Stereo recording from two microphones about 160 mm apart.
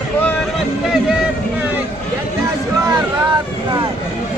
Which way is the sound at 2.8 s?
20° right (ahead or behind).